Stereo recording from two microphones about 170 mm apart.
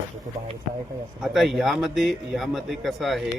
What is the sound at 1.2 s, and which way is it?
Speech, centre (ahead or behind).